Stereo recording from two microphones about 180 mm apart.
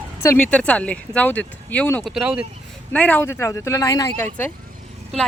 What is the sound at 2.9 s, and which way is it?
Speech, 10° left (ahead or behind).